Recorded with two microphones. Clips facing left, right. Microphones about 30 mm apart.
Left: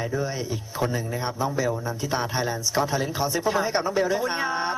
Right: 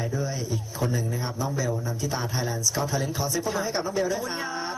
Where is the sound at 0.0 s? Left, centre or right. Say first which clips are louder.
Left 2 dB; left.